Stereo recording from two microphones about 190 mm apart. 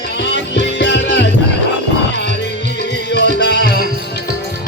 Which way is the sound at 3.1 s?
60° left (ahead or behind).